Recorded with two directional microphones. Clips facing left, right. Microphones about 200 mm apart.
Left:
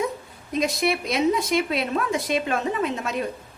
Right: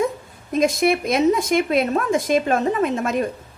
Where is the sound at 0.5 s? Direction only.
50° right (ahead or behind).